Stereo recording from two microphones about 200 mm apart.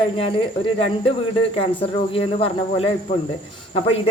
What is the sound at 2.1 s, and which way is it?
Speech, 30° left (ahead or behind).